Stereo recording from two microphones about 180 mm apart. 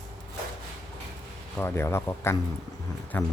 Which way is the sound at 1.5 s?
15° left (ahead or behind).